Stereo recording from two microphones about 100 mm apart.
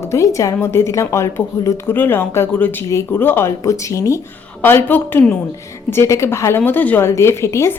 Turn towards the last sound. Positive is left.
turn(degrees=25)  # may be behind; listen again after turning